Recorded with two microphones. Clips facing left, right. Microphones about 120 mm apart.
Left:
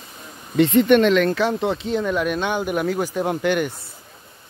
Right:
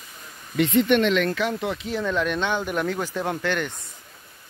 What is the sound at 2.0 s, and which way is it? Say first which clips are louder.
Speech: right 1 dB; 10° left (ahead or behind).